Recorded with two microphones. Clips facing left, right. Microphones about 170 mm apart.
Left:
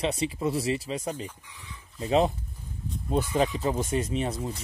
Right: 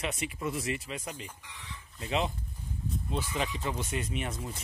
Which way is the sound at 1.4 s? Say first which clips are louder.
Even; 85° right.